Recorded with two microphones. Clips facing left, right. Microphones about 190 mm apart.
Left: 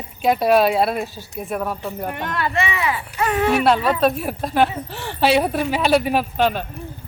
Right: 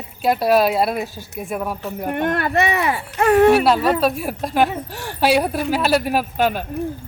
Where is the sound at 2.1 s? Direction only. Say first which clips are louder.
Right 7 dB; 55° right (ahead or behind).